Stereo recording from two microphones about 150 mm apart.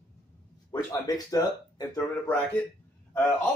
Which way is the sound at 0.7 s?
25° left (ahead or behind).